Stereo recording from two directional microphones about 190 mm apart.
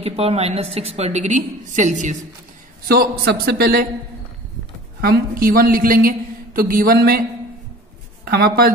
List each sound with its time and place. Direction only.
0.0 s a woman's voice: 30° right (ahead or behind)
2.9 s a man's voice: 55° right (ahead or behind)
5.0 s a woman's voice: 50° right (ahead or behind)
8.3 s a woman's voice: 55° right (ahead or behind)